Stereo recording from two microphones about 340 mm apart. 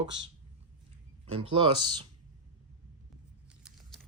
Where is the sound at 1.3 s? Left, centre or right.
Centre.